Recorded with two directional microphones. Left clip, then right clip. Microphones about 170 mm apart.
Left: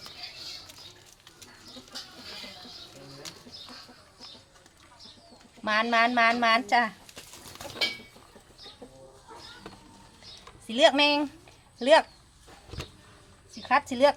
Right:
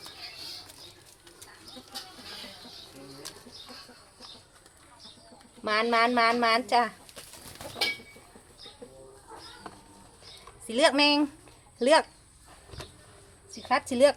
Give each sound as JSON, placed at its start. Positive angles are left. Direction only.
{"t": 5.6, "sound": "speech", "side_deg": -30}
{"t": 10.7, "sound": "speech", "side_deg": -30}
{"t": 13.6, "sound": "speech", "side_deg": -25}